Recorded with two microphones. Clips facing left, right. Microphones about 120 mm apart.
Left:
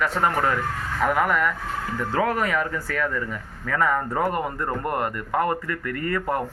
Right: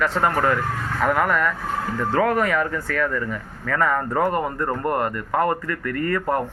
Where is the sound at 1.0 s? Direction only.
15° left (ahead or behind).